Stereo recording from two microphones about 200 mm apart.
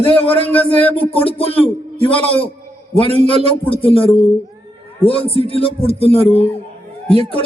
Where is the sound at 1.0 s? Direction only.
30° left (ahead or behind).